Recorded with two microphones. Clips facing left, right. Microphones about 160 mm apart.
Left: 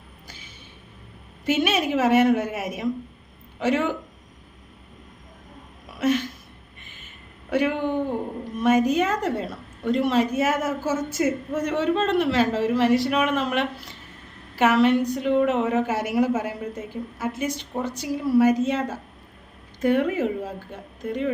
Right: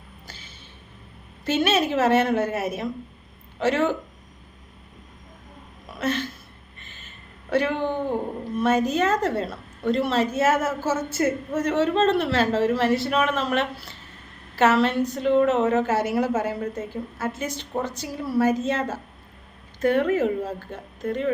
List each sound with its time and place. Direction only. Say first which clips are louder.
1.5 s a woman's voice: even; 10° left (ahead or behind)
6.0 s a sound: left 4 dB; 10° left (ahead or behind)
8.5 s a woman's voice: left 2 dB; 15° left (ahead or behind)